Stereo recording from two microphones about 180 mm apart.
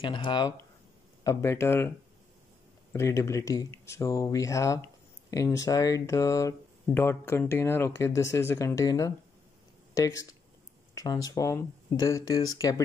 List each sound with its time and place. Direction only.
0.0 s speech: 25° left (ahead or behind)
1.2 s speech: 15° left (ahead or behind)
2.9 s speech: 15° left (ahead or behind)